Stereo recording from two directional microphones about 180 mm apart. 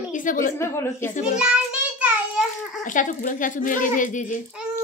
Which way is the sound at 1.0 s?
45° left (ahead or behind).